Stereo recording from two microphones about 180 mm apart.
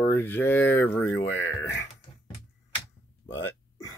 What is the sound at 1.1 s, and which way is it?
Speech, 90° left.